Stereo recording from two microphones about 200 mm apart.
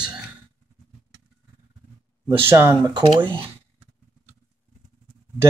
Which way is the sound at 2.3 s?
10° right (ahead or behind).